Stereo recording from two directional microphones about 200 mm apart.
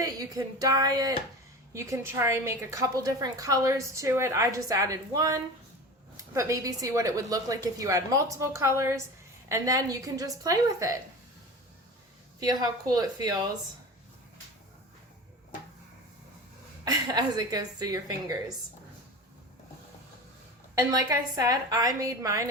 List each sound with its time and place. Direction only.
0.0 s a woman's voice: 15° right (ahead or behind)
12.4 s a woman's voice: 20° right (ahead or behind)
16.8 s a woman's voice: 20° right (ahead or behind)
20.7 s a woman's voice: 15° right (ahead or behind)